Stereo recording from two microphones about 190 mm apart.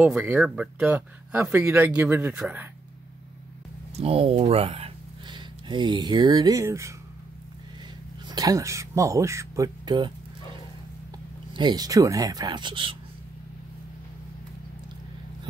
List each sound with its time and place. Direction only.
0.0 s speech: 5° right (ahead or behind)
3.9 s speech: 30° right (ahead or behind); by 6.9 s 15° right (ahead or behind)
8.3 s speech: 20° right (ahead or behind)